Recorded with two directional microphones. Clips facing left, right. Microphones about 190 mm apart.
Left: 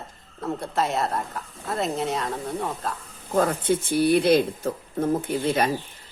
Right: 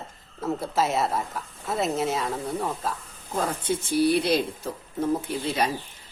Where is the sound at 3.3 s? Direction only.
55° left (ahead or behind).